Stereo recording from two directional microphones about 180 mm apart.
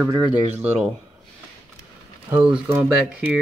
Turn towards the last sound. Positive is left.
turn(degrees=-10)  # may be behind; listen again after turning